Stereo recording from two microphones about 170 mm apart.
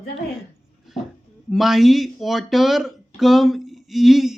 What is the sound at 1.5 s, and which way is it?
Speech, centre (ahead or behind).